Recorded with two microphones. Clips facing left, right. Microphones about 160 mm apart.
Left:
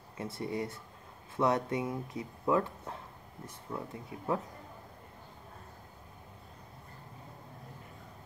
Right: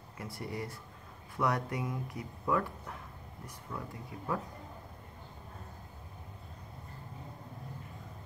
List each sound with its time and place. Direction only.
0.2 s speech: 25° left (ahead or behind)